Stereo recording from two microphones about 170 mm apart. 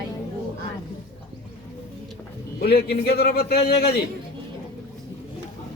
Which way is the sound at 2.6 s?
70° left (ahead or behind).